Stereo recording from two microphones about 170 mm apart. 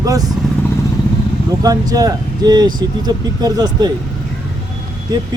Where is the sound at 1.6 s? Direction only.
20° right (ahead or behind).